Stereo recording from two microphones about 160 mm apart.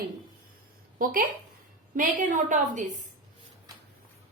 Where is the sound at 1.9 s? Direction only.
55° right (ahead or behind).